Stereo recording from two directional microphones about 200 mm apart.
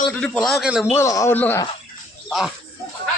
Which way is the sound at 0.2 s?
Centre (ahead or behind).